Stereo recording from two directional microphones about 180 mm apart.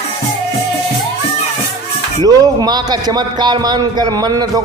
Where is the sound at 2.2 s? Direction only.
20° right (ahead or behind).